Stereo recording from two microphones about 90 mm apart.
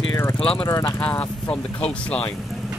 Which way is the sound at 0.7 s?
35° left (ahead or behind).